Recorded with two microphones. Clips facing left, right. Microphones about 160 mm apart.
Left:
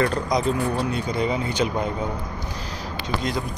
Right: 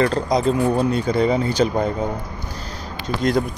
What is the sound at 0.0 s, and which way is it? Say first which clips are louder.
Speech: right 4 dB; 30° right (ahead or behind).